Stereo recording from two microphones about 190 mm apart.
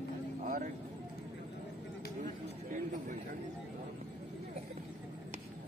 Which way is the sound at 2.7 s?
40° right (ahead or behind).